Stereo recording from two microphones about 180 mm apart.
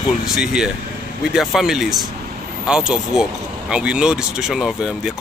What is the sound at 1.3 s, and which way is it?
Speech, centre (ahead or behind).